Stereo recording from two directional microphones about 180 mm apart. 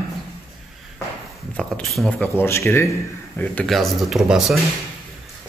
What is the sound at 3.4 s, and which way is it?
Speech, 5° left (ahead or behind).